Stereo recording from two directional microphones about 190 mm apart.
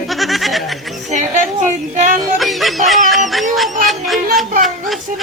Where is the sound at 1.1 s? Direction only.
40° right (ahead or behind).